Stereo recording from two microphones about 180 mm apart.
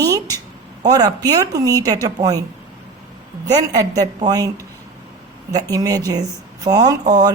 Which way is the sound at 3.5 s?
20° right (ahead or behind).